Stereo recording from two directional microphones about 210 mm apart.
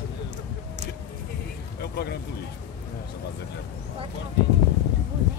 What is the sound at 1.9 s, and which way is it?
Speech, 50° left (ahead or behind).